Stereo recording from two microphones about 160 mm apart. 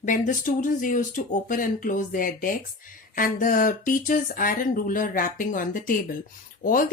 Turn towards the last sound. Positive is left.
turn(degrees=60)  # may be behind; listen again after turning